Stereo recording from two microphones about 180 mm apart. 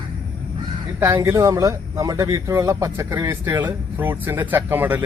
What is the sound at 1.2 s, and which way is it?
A man's voice, 15° right (ahead or behind).